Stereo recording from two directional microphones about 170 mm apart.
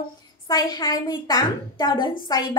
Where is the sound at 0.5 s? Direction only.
25° left (ahead or behind).